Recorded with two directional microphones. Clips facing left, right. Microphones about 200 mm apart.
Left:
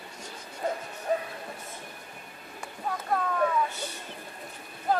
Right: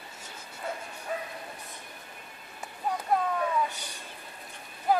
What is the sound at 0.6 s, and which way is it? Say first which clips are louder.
Bow-wow: left 6 dB; 40° left (ahead or behind).